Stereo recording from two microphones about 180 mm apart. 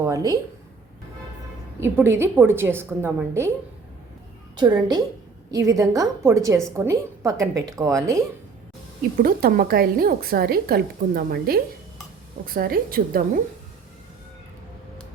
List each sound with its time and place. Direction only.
0.0 s a woman's voice: 20° right (ahead or behind)
1.8 s a woman's voice: 15° right (ahead or behind)
4.5 s a woman's voice: 25° right (ahead or behind)
9.1 s a woman's voice: 55° right (ahead or behind)